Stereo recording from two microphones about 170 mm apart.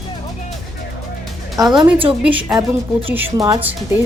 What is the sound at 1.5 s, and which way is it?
Speech, centre (ahead or behind).